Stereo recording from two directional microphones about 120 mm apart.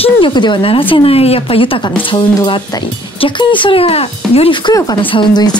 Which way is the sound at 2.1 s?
40° left (ahead or behind).